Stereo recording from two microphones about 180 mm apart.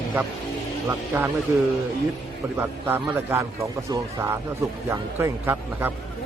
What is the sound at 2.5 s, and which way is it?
A man's voice, 10° right (ahead or behind).